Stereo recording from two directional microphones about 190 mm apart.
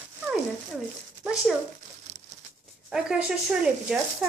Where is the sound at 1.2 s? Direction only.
Centre (ahead or behind).